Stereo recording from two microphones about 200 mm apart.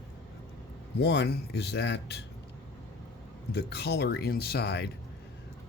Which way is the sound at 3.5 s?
55° left (ahead or behind).